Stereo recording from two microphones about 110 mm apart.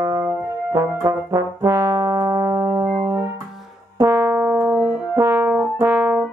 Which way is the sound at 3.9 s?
30° right (ahead or behind).